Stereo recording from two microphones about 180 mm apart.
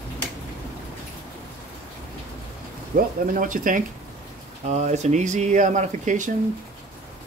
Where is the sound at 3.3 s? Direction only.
50° right (ahead or behind).